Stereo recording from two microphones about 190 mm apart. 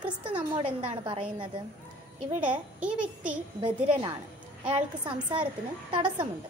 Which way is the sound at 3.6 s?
25° right (ahead or behind).